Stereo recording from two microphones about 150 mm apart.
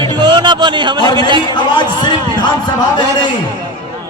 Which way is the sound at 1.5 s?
30° left (ahead or behind).